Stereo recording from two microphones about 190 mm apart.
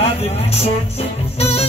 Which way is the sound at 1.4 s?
30° left (ahead or behind).